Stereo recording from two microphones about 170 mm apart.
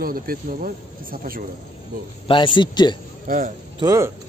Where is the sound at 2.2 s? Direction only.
30° left (ahead or behind).